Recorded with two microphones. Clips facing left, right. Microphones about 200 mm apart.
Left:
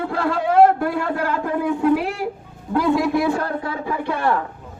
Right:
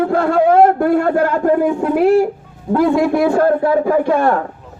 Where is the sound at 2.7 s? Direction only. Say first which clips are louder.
Right 5 dB; 50° right (ahead or behind).